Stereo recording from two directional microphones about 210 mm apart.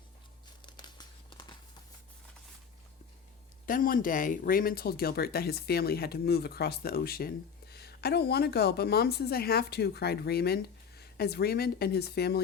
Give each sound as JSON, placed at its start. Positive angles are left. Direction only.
{"t": 0.6, "sound": "crumpling", "side_deg": 20}
{"t": 3.7, "sound": "speech", "side_deg": 40}